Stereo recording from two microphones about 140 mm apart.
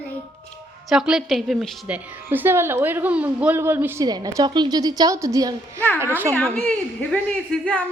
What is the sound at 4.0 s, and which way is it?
A woman's voice, 25° right (ahead or behind).